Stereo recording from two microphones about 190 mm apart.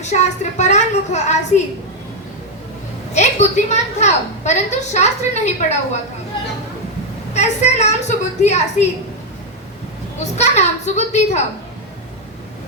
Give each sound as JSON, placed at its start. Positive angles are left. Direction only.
{"t": 0.0, "sound": "a woman's voice", "side_deg": 35}
{"t": 3.2, "sound": "a woman's voice", "side_deg": 40}
{"t": 7.3, "sound": "a woman's voice", "side_deg": 35}
{"t": 10.3, "sound": "a woman's voice", "side_deg": 35}